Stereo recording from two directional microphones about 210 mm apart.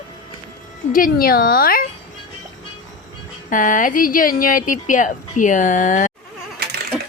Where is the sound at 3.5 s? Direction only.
40° left (ahead or behind).